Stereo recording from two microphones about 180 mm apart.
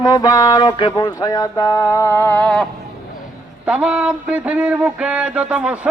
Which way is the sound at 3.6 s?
5° right (ahead or behind).